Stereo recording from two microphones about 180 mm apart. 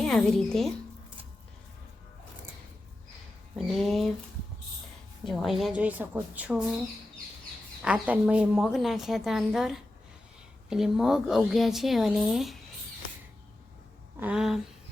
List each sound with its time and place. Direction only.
0.0 s a woman's voice: 5° left (ahead or behind)
3.5 s a woman's voice: centre (ahead or behind)
5.2 s a woman's voice: centre (ahead or behind)
7.8 s a woman's voice: 5° right (ahead or behind)
14.2 s a woman's voice: 5° right (ahead or behind)